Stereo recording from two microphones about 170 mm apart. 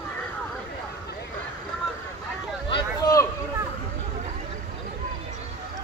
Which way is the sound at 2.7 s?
20° left (ahead or behind).